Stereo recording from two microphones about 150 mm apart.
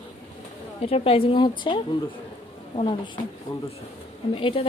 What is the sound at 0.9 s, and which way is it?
Speech, 40° left (ahead or behind).